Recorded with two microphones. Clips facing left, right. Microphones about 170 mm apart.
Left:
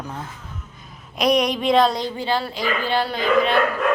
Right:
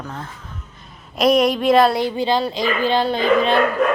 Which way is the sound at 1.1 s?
Centre (ahead or behind).